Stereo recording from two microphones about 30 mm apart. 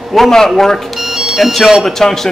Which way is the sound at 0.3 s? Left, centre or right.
Centre.